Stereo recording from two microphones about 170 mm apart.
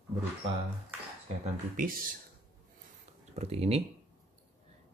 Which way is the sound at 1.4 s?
55° right (ahead or behind).